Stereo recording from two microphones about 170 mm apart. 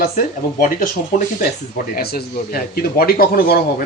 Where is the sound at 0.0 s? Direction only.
55° left (ahead or behind).